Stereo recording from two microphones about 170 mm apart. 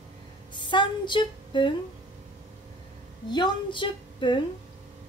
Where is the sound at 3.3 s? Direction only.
25° left (ahead or behind).